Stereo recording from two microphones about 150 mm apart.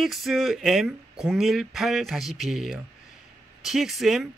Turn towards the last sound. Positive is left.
turn(degrees=0)  # may be behind; listen again after turning